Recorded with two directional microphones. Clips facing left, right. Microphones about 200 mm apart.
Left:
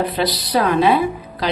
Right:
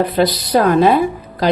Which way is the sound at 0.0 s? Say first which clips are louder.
Right 5 dB; 45° right (ahead or behind).